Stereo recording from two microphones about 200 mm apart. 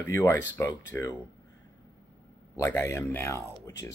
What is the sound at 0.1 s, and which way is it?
Speech, 10° left (ahead or behind).